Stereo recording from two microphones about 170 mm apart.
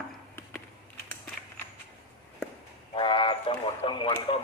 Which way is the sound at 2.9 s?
30° left (ahead or behind).